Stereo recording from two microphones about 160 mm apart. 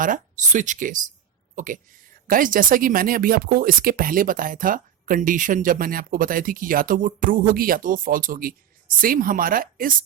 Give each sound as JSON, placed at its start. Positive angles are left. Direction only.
{"t": 0.0, "sound": "speech", "side_deg": -55}